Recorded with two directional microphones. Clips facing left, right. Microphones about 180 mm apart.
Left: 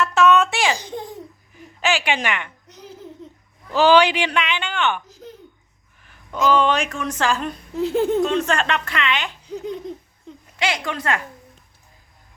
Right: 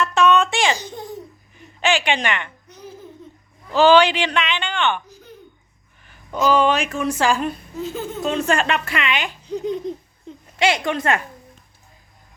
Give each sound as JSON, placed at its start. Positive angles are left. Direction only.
{"t": 0.0, "sound": "a sound", "side_deg": 5}
{"t": 3.8, "sound": "a woman's voice", "side_deg": 10}
{"t": 7.8, "sound": "speech", "side_deg": 65}
{"t": 8.2, "sound": "speech", "side_deg": -5}
{"t": 9.5, "sound": "laughter", "side_deg": 5}
{"t": 10.3, "sound": "a sound", "side_deg": 0}
{"t": 10.6, "sound": "a woman's voice", "side_deg": -25}